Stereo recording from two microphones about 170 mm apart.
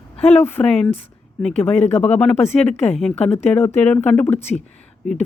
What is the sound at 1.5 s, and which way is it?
Speech, 40° left (ahead or behind).